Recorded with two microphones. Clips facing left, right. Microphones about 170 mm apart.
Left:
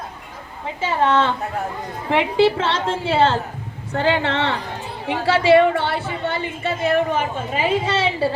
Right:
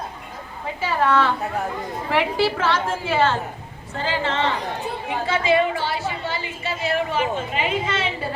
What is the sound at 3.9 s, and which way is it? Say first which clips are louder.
A woman's voice: left 4 dB; 65° left (ahead or behind).